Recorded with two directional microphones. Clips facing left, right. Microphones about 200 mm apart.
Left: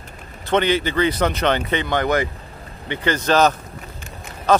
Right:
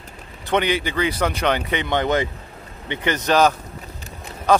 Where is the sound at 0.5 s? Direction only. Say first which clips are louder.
Left 2 dB; 15° right (ahead or behind).